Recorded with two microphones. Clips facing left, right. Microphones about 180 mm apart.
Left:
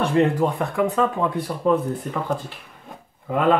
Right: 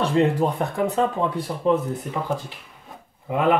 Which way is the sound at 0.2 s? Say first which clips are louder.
Left 1 dB; 20° right (ahead or behind).